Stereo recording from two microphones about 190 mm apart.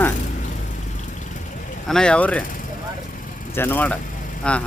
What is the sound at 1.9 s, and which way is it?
Speech, 5° left (ahead or behind).